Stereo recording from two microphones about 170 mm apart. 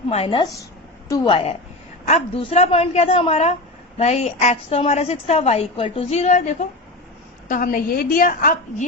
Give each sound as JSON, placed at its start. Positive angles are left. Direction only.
{"t": 0.1, "sound": "a woman's voice", "side_deg": 35}